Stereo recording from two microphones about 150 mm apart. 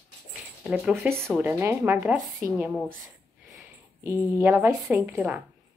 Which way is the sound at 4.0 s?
15° right (ahead or behind).